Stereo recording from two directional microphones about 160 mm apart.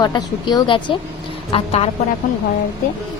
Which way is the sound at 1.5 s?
40° left (ahead or behind).